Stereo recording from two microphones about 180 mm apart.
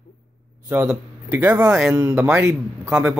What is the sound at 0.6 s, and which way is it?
Speech, 10° right (ahead or behind).